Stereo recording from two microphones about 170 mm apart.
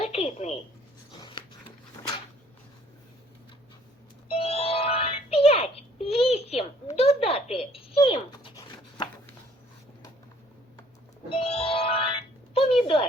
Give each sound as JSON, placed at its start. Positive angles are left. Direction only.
{"t": 0.0, "sound": "telephone", "side_deg": 35}
{"t": 1.2, "sound": "a sound", "side_deg": 30}
{"t": 4.3, "sound": "music", "side_deg": 35}
{"t": 8.5, "sound": "rub", "side_deg": 25}
{"t": 11.3, "sound": "music", "side_deg": 35}
{"t": 12.5, "sound": "a sound", "side_deg": 35}